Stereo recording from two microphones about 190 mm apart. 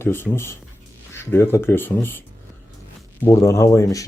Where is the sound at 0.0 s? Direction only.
10° left (ahead or behind).